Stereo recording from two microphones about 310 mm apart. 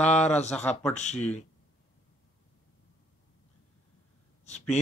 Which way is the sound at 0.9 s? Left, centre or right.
Left.